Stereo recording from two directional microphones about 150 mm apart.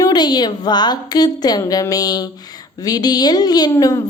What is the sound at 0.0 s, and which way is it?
Speech, 25° left (ahead or behind).